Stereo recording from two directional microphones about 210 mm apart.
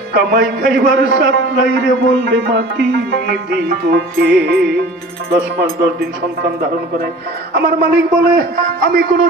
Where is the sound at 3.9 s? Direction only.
50° right (ahead or behind).